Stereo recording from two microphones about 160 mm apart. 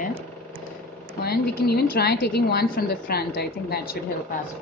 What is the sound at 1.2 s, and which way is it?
A woman's voice, 75° left (ahead or behind).